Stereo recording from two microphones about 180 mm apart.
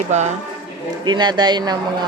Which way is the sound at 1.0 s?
25° right (ahead or behind).